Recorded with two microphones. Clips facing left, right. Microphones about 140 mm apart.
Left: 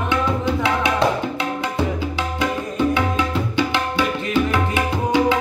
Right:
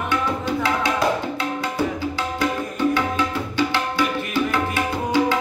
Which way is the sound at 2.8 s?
20° left (ahead or behind).